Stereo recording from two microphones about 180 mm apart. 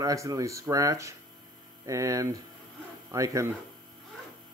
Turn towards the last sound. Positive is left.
turn(degrees=-15)  # may be behind; listen again after turning